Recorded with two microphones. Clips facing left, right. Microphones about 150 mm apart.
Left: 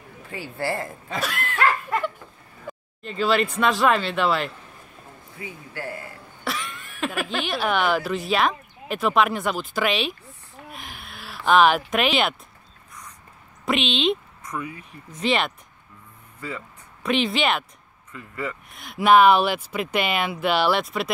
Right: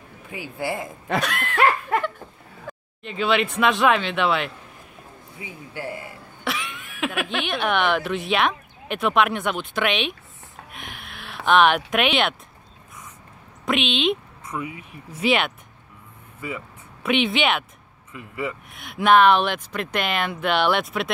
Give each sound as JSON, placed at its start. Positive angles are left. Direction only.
{"t": 0.3, "sound": "speech", "side_deg": -15}
{"t": 1.1, "sound": "speech", "side_deg": -70}
{"t": 1.5, "sound": "laughter", "side_deg": -65}
{"t": 3.0, "sound": "speech", "side_deg": 0}
{"t": 5.4, "sound": "a man's voice", "side_deg": -20}
{"t": 6.4, "sound": "speech", "side_deg": 0}
{"t": 10.7, "sound": "a sound", "side_deg": 0}
{"t": 11.4, "sound": "speech", "side_deg": 0}
{"t": 13.7, "sound": "speech", "side_deg": 0}
{"t": 14.6, "sound": "speech", "side_deg": -10}
{"t": 16.3, "sound": "speech", "side_deg": -15}
{"t": 17.0, "sound": "speech", "side_deg": 0}
{"t": 18.1, "sound": "speech", "side_deg": -15}
{"t": 18.7, "sound": "speech", "side_deg": 0}